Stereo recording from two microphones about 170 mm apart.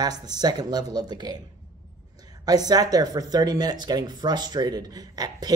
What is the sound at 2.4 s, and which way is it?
Speech, 20° right (ahead or behind).